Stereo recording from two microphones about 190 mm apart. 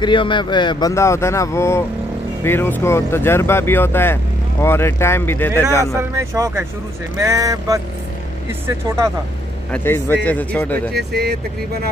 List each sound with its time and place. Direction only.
0.0 s speech: 25° left (ahead or behind)
6.1 s speech: 15° right (ahead or behind)
9.7 s speech: 10° left (ahead or behind)
10.9 s speech: 60° right (ahead or behind)